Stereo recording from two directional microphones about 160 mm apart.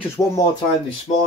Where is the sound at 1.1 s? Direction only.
55° left (ahead or behind).